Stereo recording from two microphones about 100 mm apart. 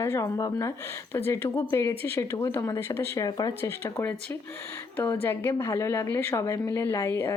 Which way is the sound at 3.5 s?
25° left (ahead or behind).